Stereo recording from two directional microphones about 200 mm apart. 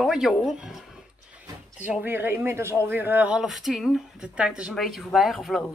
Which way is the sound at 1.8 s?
10° right (ahead or behind).